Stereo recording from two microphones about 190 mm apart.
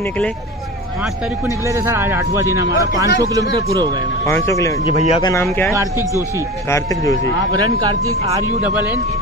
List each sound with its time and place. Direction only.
1.7 s speech: 15° right (ahead or behind)
4.3 s speech: 15° left (ahead or behind)
4.8 s speech: 30° left (ahead or behind)
5.2 s speech: 15° left (ahead or behind)
7.3 s speech: 20° right (ahead or behind)